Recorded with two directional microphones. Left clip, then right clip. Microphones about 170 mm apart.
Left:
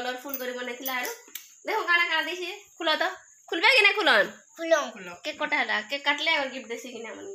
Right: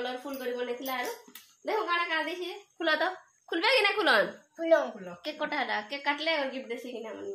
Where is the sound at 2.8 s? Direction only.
30° left (ahead or behind).